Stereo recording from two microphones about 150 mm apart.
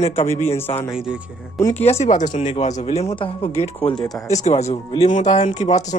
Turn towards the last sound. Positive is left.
turn(degrees=50)  # may be behind; listen again after turning